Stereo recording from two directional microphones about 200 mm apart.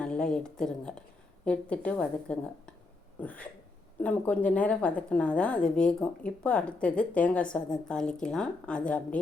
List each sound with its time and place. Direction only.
0.0 s a woman's voice: 5° left (ahead or behind)
3.2 s a sound: 10° left (ahead or behind)
4.0 s a woman's voice: 5° left (ahead or behind)